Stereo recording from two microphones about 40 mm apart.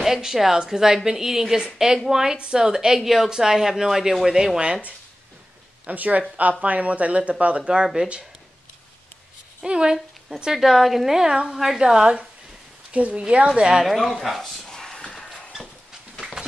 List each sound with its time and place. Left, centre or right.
0.0 s a woman's voice: centre
2.3 s a woman's voice: right
2.6 s a woman's voice: centre
5.9 s speech: right
9.6 s speech: centre
10.5 s a woman's voice: centre
12.9 s speech: right
13.6 s a woman's voice: right
13.8 s a woman's voice: centre
14.7 s a sound: centre